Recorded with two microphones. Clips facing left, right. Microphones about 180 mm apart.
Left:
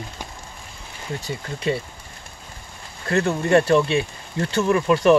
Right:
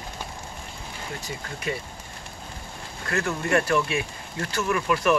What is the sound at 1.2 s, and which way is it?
Speech, 30° left (ahead or behind).